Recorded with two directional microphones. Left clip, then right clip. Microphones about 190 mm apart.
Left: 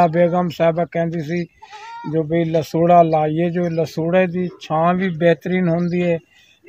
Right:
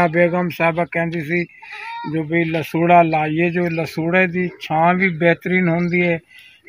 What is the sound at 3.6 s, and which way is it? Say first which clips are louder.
Speech: left 1 dB; 45° left (ahead or behind).